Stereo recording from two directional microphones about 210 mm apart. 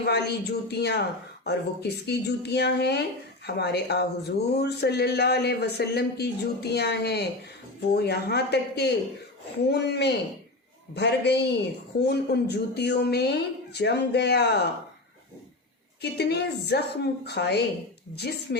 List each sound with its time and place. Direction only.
0.0 s a woman's voice: 50° left (ahead or behind)
16.0 s a woman's voice: 50° left (ahead or behind)